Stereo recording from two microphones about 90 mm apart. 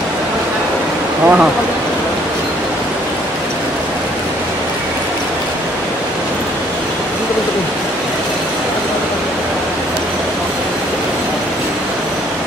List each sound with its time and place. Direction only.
1.2 s speech: 15° right (ahead or behind)